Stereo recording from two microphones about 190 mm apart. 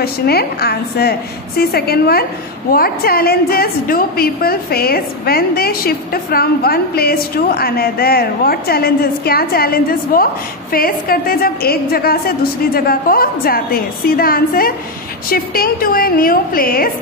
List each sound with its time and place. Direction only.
0.0 s a woman's voice: 55° left (ahead or behind)